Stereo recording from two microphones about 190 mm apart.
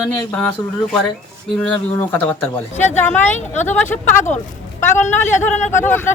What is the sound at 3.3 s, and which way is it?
Speech, 40° left (ahead or behind).